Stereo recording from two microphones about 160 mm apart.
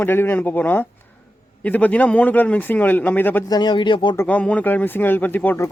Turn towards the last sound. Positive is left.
turn(degrees=10)  # may be behind; listen again after turning